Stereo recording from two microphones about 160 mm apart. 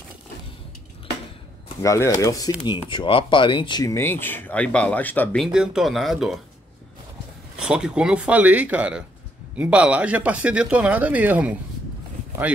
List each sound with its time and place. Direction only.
1.8 s speech: 20° left (ahead or behind)
5.4 s speech: 5° right (ahead or behind)
7.5 s speech: 5° right (ahead or behind)